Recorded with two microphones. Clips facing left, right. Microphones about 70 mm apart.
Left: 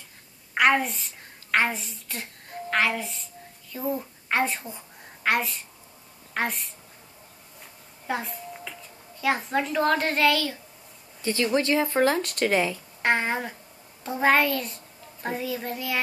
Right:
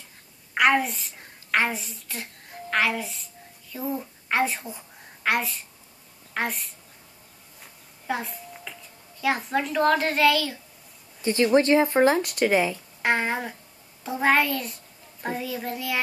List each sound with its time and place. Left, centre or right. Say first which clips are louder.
0.6 s a child's voice: even; centre
8.1 s a sound: even; centre
9.2 s a child's voice: even; centre
11.2 s speech: right 4 dB; right
12.2 s a child's voice: right 2 dB; centre